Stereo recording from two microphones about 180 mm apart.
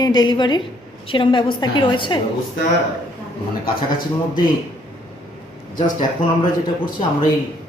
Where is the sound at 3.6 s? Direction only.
55° left (ahead or behind).